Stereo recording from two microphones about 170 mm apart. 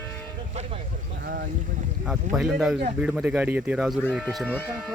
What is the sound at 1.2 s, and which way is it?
Boat, 60° right (ahead or behind).